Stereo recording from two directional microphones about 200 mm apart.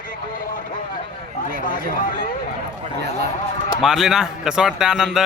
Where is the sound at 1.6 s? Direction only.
45° left (ahead or behind).